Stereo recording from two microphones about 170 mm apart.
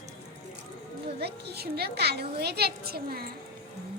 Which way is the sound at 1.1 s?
70° right (ahead or behind).